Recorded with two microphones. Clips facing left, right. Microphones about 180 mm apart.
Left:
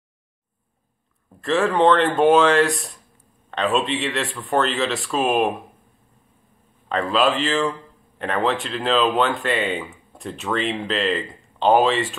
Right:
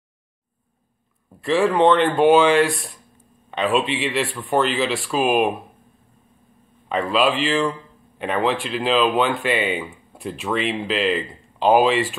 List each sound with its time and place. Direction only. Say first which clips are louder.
1.4 s speech: right 1 dB; centre (ahead or behind)
6.9 s speech: even; centre (ahead or behind)